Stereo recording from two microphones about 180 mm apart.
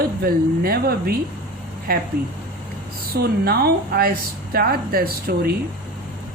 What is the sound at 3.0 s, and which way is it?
A woman's voice, 60° right (ahead or behind).